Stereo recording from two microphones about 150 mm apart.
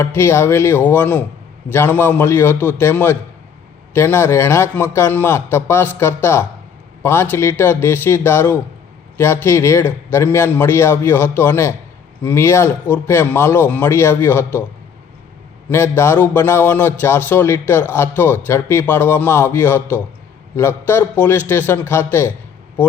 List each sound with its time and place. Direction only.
0.0 s a man's voice: 15° left (ahead or behind)
15.7 s a man's voice: 15° left (ahead or behind)